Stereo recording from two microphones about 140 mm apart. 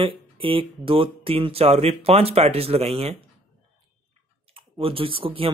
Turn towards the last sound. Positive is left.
turn(degrees=-40)  # may be behind; listen again after turning